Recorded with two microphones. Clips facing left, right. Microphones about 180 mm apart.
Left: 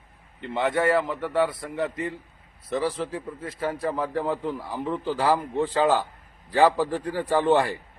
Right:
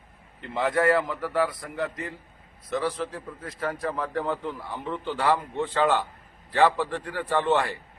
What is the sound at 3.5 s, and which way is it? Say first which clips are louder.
Speech: left 2 dB; 5° left (ahead or behind).